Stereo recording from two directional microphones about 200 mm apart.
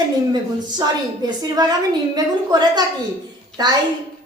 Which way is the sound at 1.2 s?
20° right (ahead or behind).